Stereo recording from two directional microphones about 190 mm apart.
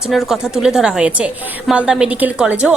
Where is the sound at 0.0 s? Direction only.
Centre (ahead or behind).